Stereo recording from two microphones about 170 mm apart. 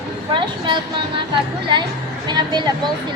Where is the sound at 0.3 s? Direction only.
30° right (ahead or behind).